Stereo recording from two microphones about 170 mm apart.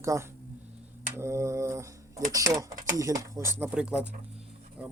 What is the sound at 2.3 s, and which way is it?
Speech, 20° right (ahead or behind).